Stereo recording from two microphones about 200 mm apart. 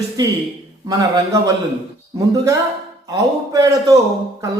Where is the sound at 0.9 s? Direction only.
15° right (ahead or behind).